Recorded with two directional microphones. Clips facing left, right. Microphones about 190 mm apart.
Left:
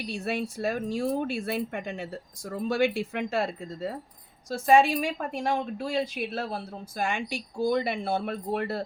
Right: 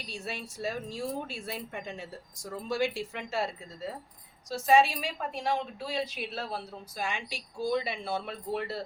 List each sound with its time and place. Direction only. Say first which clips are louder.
0.0 s a woman's voice: left 9 dB; 60° left (ahead or behind)